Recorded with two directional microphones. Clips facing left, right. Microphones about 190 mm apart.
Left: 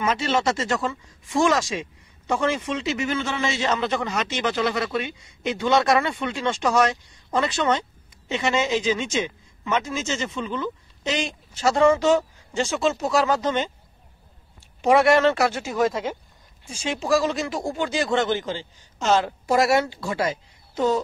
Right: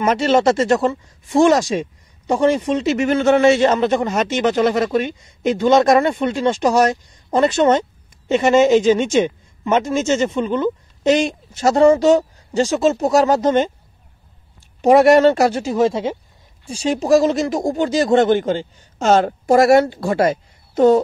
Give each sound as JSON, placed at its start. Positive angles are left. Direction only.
{"t": 0.0, "sound": "speech", "side_deg": -50}
{"t": 14.8, "sound": "a woman's voice", "side_deg": -40}